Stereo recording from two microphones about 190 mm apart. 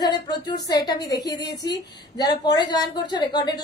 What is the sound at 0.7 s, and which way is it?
A woman's voice, 20° left (ahead or behind).